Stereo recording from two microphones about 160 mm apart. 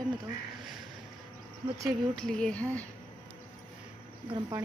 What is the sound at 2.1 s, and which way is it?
Speech, 5° left (ahead or behind).